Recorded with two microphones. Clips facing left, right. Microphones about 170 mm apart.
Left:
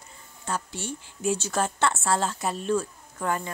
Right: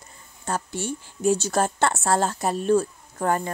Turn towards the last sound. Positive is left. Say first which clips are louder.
# right 5 dB
turn(degrees=-45)  # may be behind; listen again after turning